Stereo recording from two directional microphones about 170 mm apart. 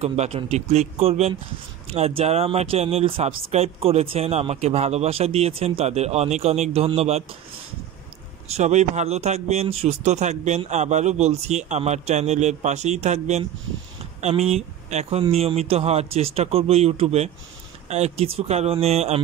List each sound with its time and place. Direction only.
0.0 s speech: 40° right (ahead or behind)
8.5 s speech: 40° right (ahead or behind)